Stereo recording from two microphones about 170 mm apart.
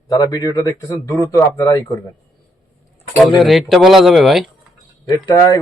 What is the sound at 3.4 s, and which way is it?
Speech, centre (ahead or behind).